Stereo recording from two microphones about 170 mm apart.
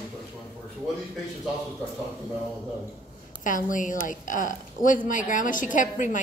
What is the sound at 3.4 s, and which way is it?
A woman's voice, 50° left (ahead or behind).